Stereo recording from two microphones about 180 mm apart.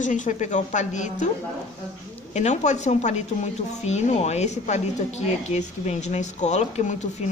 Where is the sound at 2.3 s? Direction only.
40° left (ahead or behind).